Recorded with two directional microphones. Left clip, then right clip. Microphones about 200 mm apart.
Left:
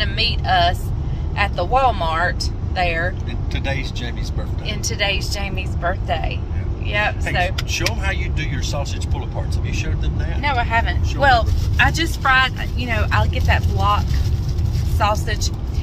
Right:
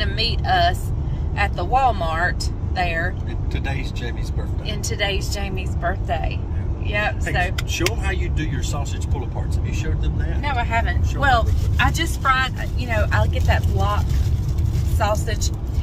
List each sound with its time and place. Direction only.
0.0 s vehicle: centre (ahead or behind)
1.3 s speech: centre (ahead or behind)
4.6 s speech: centre (ahead or behind)
7.5 s speech: 20° right (ahead or behind)
10.4 s speech: centre (ahead or behind)
15.0 s speech: centre (ahead or behind)